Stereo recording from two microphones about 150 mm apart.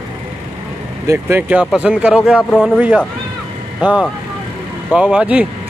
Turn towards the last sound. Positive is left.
turn(degrees=-10)  # may be behind; listen again after turning